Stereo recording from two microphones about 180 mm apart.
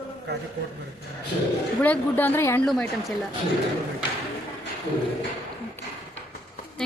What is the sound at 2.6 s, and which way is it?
Speech, centre (ahead or behind).